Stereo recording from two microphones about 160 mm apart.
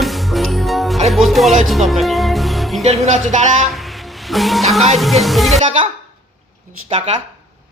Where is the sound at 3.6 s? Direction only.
Centre (ahead or behind).